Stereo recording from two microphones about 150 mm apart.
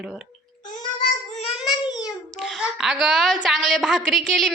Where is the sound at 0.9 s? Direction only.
50° left (ahead or behind).